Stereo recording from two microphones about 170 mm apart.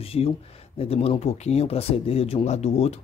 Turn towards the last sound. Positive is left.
turn(degrees=40)  # may be behind; listen again after turning